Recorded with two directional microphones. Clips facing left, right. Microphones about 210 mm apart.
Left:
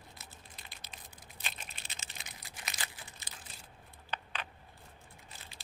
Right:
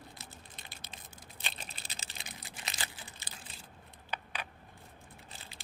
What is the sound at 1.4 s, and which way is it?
Crumpling, 30° right (ahead or behind).